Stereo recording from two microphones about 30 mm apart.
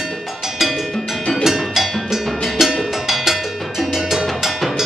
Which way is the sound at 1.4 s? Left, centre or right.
Centre.